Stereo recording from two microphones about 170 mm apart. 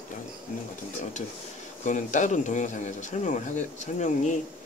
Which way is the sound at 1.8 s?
50° left (ahead or behind).